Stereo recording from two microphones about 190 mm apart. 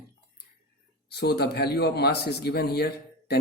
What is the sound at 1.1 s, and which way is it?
A man's voice, 60° left (ahead or behind).